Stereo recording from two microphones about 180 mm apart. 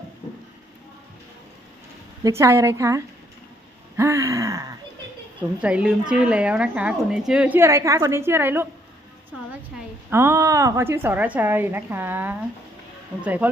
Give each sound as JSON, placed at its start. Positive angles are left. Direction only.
{"t": 2.2, "sound": "a woman's voice", "side_deg": -15}
{"t": 3.9, "sound": "a sound", "side_deg": -15}
{"t": 5.4, "sound": "a woman's voice", "side_deg": -5}
{"t": 10.1, "sound": "a woman's voice", "side_deg": -15}